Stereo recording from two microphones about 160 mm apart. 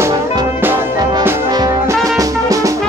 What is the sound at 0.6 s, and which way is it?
Music, 15° right (ahead or behind).